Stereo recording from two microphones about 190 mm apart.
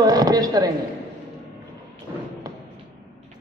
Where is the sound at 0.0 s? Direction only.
20° right (ahead or behind).